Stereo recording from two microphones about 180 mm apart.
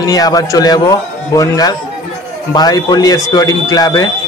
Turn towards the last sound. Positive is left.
turn(degrees=20)  # may be behind; listen again after turning